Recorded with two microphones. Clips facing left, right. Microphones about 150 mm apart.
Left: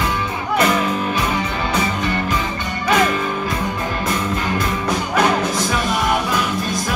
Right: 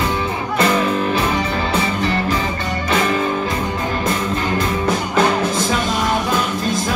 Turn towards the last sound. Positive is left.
turn(degrees=-25)  # may be behind; listen again after turning